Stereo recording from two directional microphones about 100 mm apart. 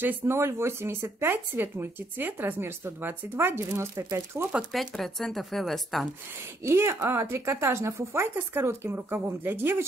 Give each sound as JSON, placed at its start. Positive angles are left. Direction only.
{"t": 0.0, "sound": "speech", "side_deg": -25}
{"t": 4.7, "sound": "speech", "side_deg": 5}
{"t": 6.6, "sound": "speech", "side_deg": -25}